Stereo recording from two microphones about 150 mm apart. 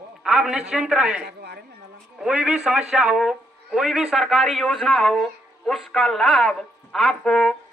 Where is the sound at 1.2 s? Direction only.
90° right.